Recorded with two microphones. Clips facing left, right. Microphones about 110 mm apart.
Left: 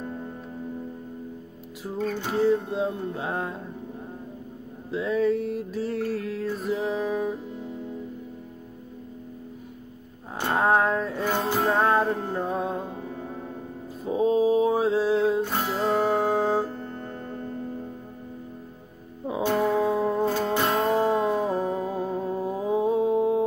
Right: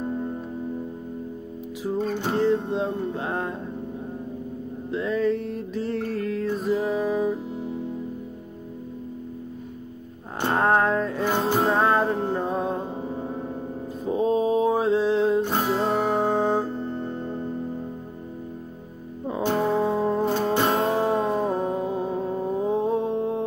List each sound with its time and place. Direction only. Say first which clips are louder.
2.0 s music: right 1 dB; 25° right (ahead or behind)
2.3 s mantra: even; 5° left (ahead or behind)
4.9 s mantra: even; 5° left (ahead or behind)
10.5 s mantra: right 1 dB; centre (ahead or behind)
11.2 s music: right 2 dB; 20° right (ahead or behind)
11.7 s music: right 1 dB; centre (ahead or behind)
14.0 s mantra: left 1 dB; centre (ahead or behind)
15.8 s music: even; centre (ahead or behind)
16.7 s music: right 6 dB; 20° right (ahead or behind)
19.4 s music: even; 20° right (ahead or behind)
21.0 s music: even; centre (ahead or behind)
21.8 s music: right 2 dB; 20° right (ahead or behind)
22.1 s music: right 2 dB; 5° left (ahead or behind)